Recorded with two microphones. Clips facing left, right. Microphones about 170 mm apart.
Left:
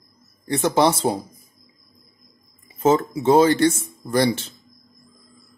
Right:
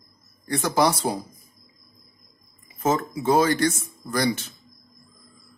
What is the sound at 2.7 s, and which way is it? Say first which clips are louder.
Speech: left 5 dB; 30° left (ahead or behind).